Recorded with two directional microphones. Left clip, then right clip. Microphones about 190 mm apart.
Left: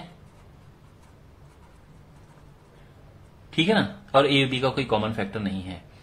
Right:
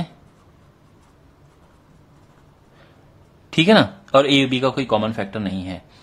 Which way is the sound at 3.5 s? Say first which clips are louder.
Right 8 dB; 60° right (ahead or behind).